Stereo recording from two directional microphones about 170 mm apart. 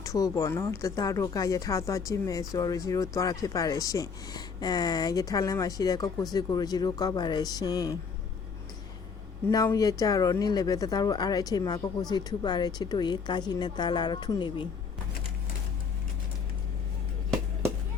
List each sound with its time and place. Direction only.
0.0 s speech: 20° left (ahead or behind)
9.5 s speech: 20° left (ahead or behind)